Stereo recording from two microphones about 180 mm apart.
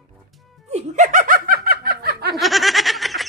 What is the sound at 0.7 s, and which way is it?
Snicker, 45° right (ahead or behind).